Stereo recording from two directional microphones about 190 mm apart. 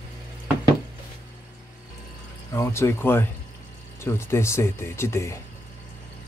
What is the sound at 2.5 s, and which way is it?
Speech, 15° left (ahead or behind).